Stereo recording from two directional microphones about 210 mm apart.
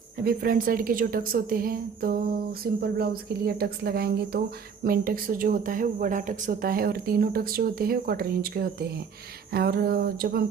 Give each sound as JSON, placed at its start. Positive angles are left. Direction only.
{"t": 0.2, "sound": "a woman's voice", "side_deg": -45}